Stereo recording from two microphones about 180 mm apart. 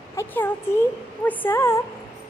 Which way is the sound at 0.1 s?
15° left (ahead or behind).